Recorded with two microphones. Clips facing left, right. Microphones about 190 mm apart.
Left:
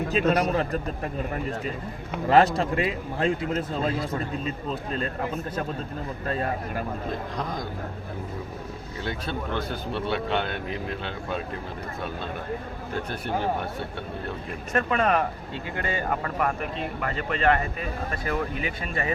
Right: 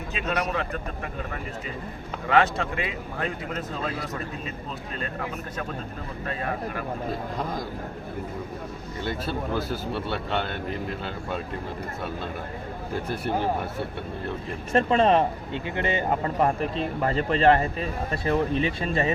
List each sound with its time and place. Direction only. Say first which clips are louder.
0.1 s a man's voice: left 4 dB; 40° left (ahead or behind)
2.2 s a man's voice: left 3 dB; 35° left (ahead or behind)
9.0 s speech: right 2 dB; 5° right (ahead or behind)
13.1 s speech: right 2 dB; 10° right (ahead or behind)
14.7 s speech: right 4 dB; 30° right (ahead or behind)